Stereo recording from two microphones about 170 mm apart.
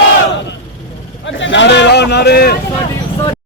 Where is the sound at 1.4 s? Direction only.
90° left; by 2.5 s 70° left (ahead or behind).